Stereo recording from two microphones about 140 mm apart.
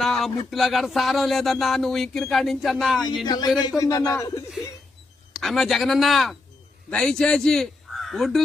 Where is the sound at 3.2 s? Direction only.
30° left (ahead or behind).